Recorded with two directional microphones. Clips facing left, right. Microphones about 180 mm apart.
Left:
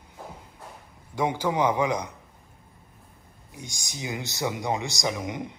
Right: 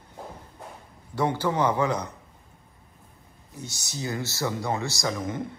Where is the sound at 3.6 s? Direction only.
15° left (ahead or behind).